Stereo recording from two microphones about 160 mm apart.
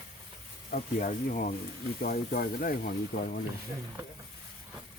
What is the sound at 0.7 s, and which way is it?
Speech, 55° left (ahead or behind).